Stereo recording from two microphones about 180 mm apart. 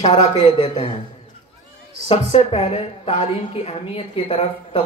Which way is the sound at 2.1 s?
35° left (ahead or behind).